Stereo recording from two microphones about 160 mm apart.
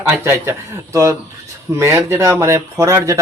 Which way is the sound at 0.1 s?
15° right (ahead or behind).